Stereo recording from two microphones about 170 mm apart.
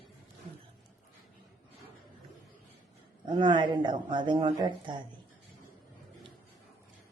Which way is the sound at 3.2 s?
25° right (ahead or behind).